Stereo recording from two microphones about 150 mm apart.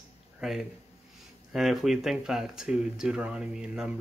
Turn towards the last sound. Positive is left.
turn(degrees=-5)  # may be behind; listen again after turning